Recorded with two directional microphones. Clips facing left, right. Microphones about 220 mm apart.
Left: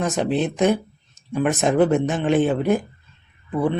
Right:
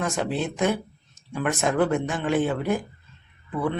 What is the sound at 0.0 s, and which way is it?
Speech, 20° left (ahead or behind).